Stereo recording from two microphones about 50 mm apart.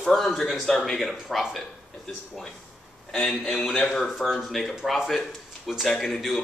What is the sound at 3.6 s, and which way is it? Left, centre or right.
Speech, centre.